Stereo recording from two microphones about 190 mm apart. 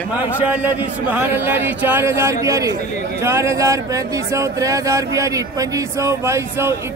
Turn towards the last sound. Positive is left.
turn(degrees=-15)  # may be behind; listen again after turning